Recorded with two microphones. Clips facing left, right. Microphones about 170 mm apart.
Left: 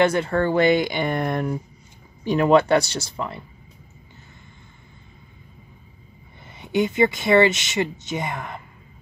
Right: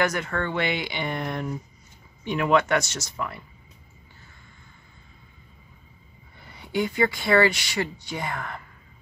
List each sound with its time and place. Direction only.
0.0 s speech: 30° left (ahead or behind); by 1.5 s 50° left (ahead or behind)
2.2 s speech: 35° left (ahead or behind)
6.4 s speech: 20° left (ahead or behind)